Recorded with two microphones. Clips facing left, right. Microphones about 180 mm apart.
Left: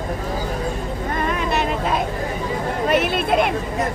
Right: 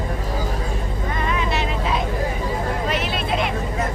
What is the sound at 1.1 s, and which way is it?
Vehicle, 50° left (ahead or behind).